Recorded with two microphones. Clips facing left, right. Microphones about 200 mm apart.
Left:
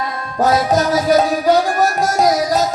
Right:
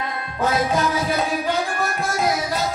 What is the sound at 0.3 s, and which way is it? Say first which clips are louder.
Music: left 6 dB; 40° left (ahead or behind).